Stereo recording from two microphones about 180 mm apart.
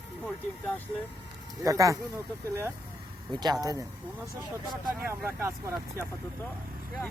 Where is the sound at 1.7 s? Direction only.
20° right (ahead or behind).